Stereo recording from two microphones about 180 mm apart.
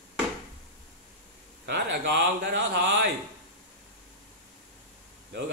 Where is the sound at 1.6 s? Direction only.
70° right (ahead or behind).